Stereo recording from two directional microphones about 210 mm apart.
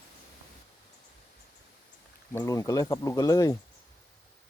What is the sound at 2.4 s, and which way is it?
Speech, 15° left (ahead or behind).